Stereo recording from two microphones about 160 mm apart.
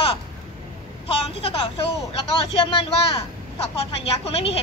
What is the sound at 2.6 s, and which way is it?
A woman's voice, 35° left (ahead or behind).